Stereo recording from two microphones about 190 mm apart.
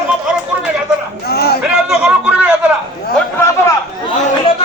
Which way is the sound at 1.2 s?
55° left (ahead or behind).